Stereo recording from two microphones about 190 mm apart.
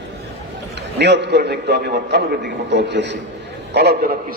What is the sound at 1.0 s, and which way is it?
A man's voice, 65° right (ahead or behind).